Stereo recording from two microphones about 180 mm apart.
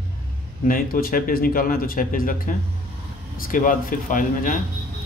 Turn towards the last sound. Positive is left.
turn(degrees=50)  # may be behind; listen again after turning